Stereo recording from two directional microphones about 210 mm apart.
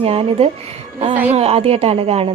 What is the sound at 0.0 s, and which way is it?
Speech, 30° right (ahead or behind).